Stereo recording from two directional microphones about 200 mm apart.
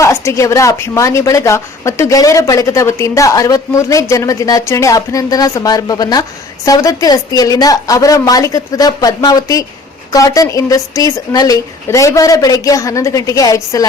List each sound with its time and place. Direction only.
0.0 s a woman's voice: 15° left (ahead or behind)